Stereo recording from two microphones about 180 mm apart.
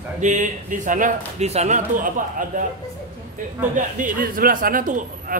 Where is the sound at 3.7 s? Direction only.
45° right (ahead or behind).